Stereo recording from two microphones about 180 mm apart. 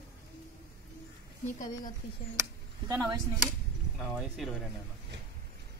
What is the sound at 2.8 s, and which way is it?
Speech, 15° right (ahead or behind).